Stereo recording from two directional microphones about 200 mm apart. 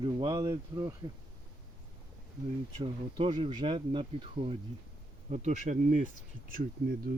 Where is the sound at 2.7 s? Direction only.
25° right (ahead or behind).